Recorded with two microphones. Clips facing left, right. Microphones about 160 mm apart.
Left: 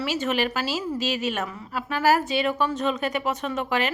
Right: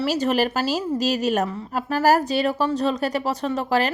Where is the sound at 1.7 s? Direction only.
40° right (ahead or behind).